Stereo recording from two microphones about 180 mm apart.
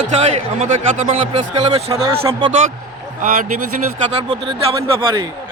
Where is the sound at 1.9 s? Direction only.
20° right (ahead or behind).